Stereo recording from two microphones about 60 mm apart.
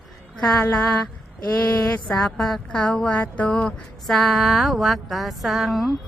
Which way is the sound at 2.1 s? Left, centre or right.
Centre.